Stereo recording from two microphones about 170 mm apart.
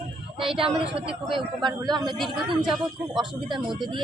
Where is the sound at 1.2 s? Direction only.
Centre (ahead or behind).